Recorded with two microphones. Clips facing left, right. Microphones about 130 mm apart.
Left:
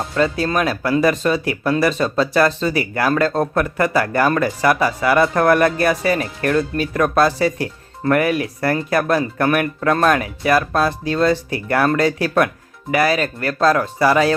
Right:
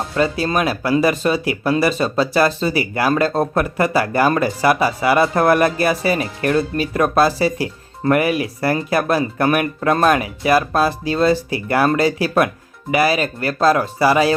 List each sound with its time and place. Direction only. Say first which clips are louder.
0.2 s speech: even; 15° right (ahead or behind)